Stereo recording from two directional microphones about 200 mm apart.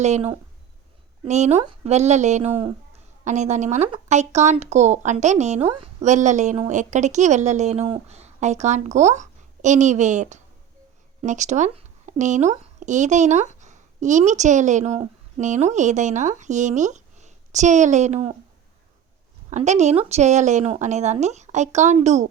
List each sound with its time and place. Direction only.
0.0 s a woman's voice: 30° right (ahead or behind)
19.5 s a woman's voice: 35° right (ahead or behind)